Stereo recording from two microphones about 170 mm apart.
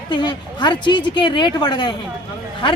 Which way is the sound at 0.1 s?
25° left (ahead or behind).